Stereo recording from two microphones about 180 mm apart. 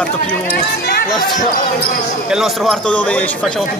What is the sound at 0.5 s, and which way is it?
Speech, 60° left (ahead or behind).